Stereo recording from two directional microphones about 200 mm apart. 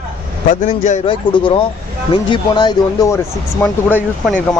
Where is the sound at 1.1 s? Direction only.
25° left (ahead or behind).